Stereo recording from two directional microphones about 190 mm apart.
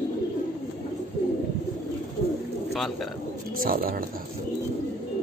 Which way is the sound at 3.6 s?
50° right (ahead or behind).